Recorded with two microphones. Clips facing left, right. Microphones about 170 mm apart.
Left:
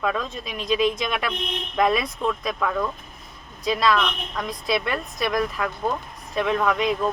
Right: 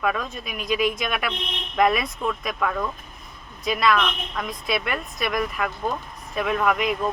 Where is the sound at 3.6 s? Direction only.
30° left (ahead or behind).